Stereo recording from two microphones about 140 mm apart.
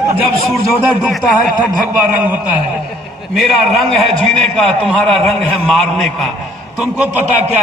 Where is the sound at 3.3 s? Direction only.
Centre (ahead or behind).